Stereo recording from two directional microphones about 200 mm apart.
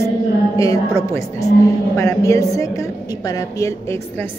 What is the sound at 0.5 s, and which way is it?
A woman's voice, 15° left (ahead or behind).